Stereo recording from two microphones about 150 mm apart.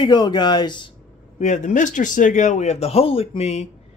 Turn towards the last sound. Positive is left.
turn(degrees=45)  # may be behind; listen again after turning